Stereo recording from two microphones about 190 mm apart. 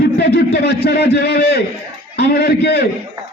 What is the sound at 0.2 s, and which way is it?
A man's voice, 60° left (ahead or behind).